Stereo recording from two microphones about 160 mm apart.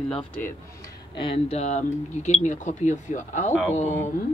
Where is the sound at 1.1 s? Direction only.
35° left (ahead or behind).